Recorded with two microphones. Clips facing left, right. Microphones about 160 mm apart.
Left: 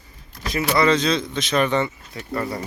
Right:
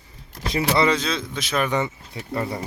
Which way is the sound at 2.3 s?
25° right (ahead or behind).